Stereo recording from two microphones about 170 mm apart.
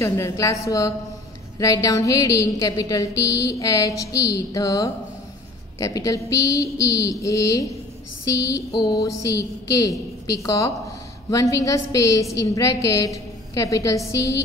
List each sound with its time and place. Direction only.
0.0 s a woman's voice: 15° left (ahead or behind)